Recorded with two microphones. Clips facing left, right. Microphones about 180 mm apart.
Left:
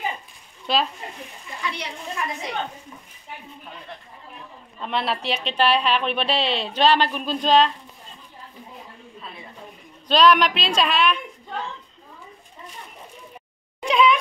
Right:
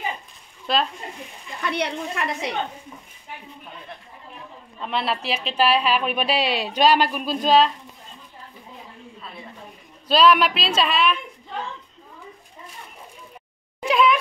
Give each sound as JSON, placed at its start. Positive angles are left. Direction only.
{"t": 0.7, "sound": "a woman's voice", "side_deg": 0}
{"t": 1.6, "sound": "speech", "side_deg": -60}
{"t": 4.7, "sound": "a woman's voice", "side_deg": 0}
{"t": 10.0, "sound": "a woman's voice", "side_deg": -5}
{"t": 13.8, "sound": "speech", "side_deg": 0}